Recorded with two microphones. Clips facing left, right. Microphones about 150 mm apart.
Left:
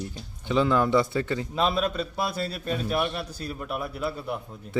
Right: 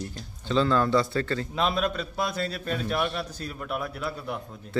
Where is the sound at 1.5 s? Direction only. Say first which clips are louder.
Left 2 dB; centre (ahead or behind).